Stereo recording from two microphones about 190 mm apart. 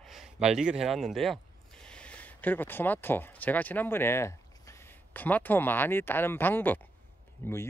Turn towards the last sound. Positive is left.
turn(degrees=10)  # may be behind; listen again after turning